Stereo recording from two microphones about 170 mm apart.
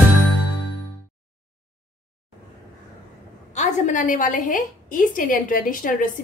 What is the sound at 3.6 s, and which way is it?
A woman's voice, 45° left (ahead or behind).